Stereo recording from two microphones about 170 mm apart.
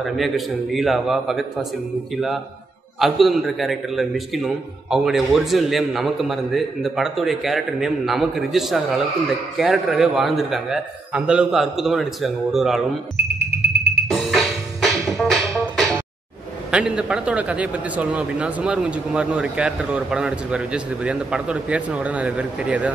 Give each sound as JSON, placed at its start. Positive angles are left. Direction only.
{"t": 0.0, "sound": "a man's voice", "side_deg": 0}
{"t": 3.0, "sound": "a man's voice", "side_deg": 0}
{"t": 13.5, "sound": "music", "side_deg": -80}
{"t": 14.1, "sound": "music", "side_deg": 0}
{"t": 16.7, "sound": "speech", "side_deg": -5}